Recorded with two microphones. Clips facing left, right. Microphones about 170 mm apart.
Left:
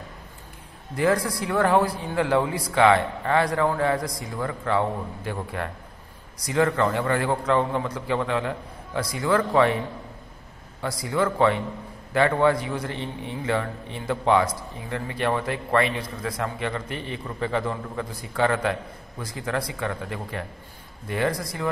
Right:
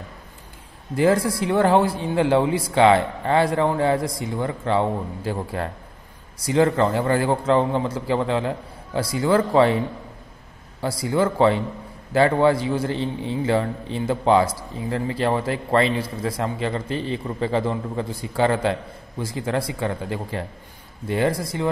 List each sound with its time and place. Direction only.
0.9 s a man's voice: 25° right (ahead or behind)
10.8 s a man's voice: 30° right (ahead or behind)